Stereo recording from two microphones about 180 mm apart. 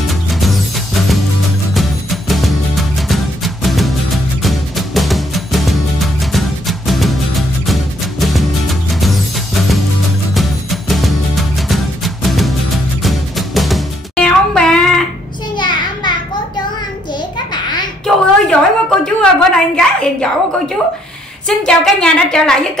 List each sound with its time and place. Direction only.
0.0 s music: centre (ahead or behind)
1.7 s music: centre (ahead or behind)
15.5 s child singing: 25° left (ahead or behind)
17.5 s a sound: 25° left (ahead or behind)
18.0 s a sound: 5° left (ahead or behind)
21.5 s a woman's voice: 5° left (ahead or behind)